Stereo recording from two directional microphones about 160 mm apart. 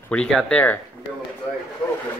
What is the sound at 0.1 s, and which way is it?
Speech, 5° left (ahead or behind).